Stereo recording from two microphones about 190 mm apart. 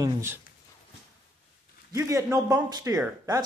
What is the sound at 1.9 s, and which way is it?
A man's voice, 15° right (ahead or behind).